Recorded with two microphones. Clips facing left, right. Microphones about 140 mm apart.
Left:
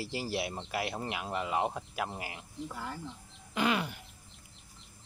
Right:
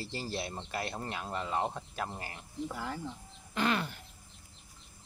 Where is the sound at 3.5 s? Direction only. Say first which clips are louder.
Left 1 dB; 10° left (ahead or behind).